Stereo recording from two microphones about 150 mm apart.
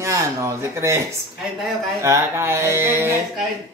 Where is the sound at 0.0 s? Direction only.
20° right (ahead or behind).